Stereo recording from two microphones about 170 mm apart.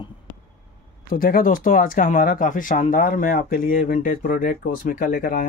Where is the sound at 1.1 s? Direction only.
55° left (ahead or behind).